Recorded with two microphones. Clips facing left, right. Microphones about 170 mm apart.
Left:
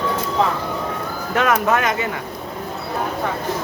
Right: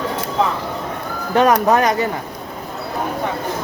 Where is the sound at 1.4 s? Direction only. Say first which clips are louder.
Right 4 dB; 35° right (ahead or behind).